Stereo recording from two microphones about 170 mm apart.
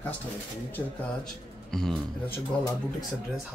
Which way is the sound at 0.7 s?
5° left (ahead or behind).